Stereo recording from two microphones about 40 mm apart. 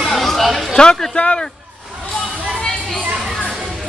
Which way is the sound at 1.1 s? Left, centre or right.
Left.